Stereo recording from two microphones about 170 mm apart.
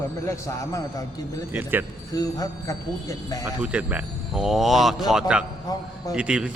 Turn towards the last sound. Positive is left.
turn(degrees=-5)  # may be behind; listen again after turning